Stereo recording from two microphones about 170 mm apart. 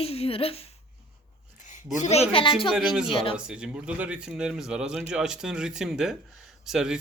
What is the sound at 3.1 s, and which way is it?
Speech, 35° left (ahead or behind).